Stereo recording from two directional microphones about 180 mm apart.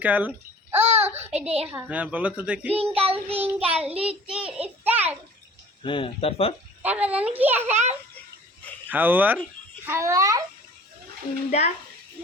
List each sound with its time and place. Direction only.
0.0 s babbling: 10° right (ahead or behind)
0.9 s a sound: 35° right (ahead or behind)
1.2 s child singing: 35° right (ahead or behind)
1.6 s a child's voice: 10° right (ahead or behind)
2.7 s child singing: 35° right (ahead or behind)
3.4 s a child's voice: 10° right (ahead or behind)
5.8 s speech: 30° left (ahead or behind)
6.8 s a child's voice: 10° right (ahead or behind)
8.9 s a child's voice: 10° right (ahead or behind)